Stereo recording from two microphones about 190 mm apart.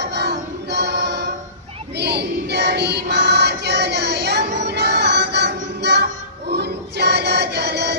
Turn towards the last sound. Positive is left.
turn(degrees=-60)  # may be behind; listen again after turning